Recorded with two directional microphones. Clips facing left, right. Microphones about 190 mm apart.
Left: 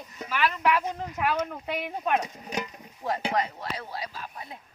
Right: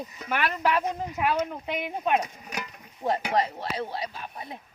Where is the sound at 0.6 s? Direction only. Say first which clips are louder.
Even; 30° right (ahead or behind).